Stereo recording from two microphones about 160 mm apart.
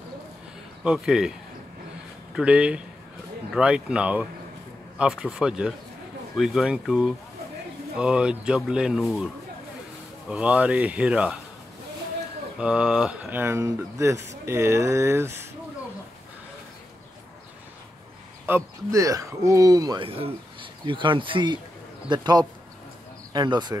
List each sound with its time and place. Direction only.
0.8 s speech: 5° right (ahead or behind)
2.3 s speech: 5° right (ahead or behind)
12.5 s speech: 5° right (ahead or behind)
18.4 s speech: 15° right (ahead or behind)
20.1 s speech: 35° right (ahead or behind)